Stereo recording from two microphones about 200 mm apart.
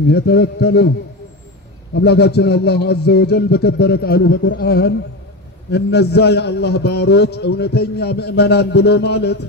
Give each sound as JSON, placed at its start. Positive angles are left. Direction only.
{"t": 0.1, "sound": "a man's voice", "side_deg": 55}
{"t": 2.0, "sound": "a man's voice", "side_deg": 55}